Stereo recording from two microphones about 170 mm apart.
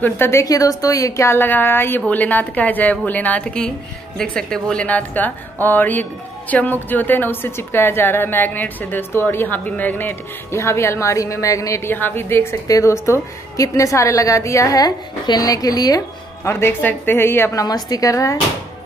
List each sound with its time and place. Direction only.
0.0 s a woman's voice: 15° left (ahead or behind)